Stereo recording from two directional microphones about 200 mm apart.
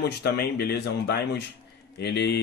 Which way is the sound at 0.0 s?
55° left (ahead or behind).